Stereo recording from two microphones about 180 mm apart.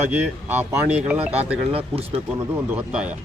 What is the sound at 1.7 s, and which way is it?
Speech, 30° right (ahead or behind).